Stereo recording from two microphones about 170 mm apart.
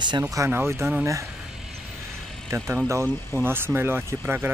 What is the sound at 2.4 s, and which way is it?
Speech, 15° right (ahead or behind).